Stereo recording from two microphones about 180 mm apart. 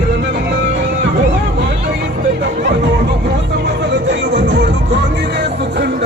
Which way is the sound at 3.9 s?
80° right.